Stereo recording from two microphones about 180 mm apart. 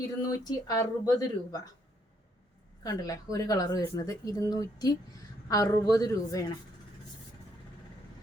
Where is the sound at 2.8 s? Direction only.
20° left (ahead or behind).